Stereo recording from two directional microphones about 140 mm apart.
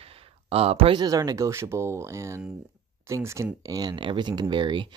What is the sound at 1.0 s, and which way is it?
Speech, 25° right (ahead or behind).